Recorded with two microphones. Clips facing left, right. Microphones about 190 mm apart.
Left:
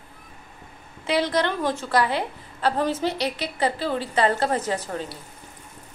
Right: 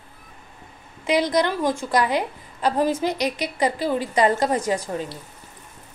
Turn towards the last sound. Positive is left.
turn(degrees=-15)  # may be behind; listen again after turning